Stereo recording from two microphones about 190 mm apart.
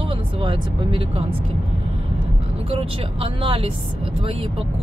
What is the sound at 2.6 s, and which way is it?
Speech, 30° right (ahead or behind).